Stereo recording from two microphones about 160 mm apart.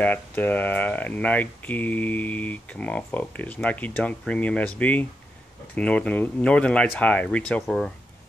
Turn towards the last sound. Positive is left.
turn(degrees=0)  # may be behind; listen again after turning